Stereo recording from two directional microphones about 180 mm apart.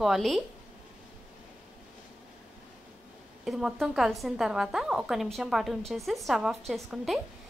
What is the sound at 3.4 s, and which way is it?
A woman's voice, centre (ahead or behind).